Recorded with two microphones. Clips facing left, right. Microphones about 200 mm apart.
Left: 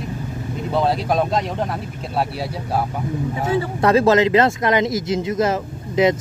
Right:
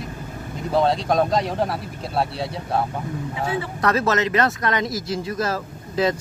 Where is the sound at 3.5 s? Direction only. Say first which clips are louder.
Left 7 dB; 30° left (ahead or behind).